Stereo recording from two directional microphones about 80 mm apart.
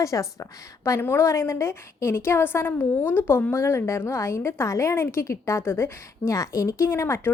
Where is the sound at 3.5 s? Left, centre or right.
Left.